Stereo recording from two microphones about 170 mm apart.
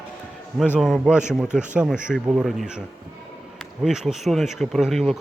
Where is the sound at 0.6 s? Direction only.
5° left (ahead or behind).